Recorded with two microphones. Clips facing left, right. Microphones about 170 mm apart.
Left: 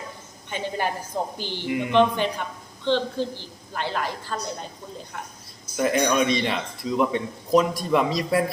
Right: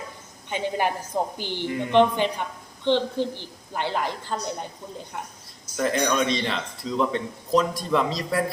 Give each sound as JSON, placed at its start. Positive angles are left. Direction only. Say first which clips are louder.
{"t": 0.5, "sound": "a woman's voice", "louder": "right 2 dB", "side_deg": -15}
{"t": 1.6, "sound": "a man's voice", "louder": "left 2 dB", "side_deg": 15}
{"t": 1.9, "sound": "a woman's voice", "louder": "right 1 dB", "side_deg": -20}
{"t": 5.7, "sound": "a man's voice", "louder": "left 2 dB", "side_deg": 10}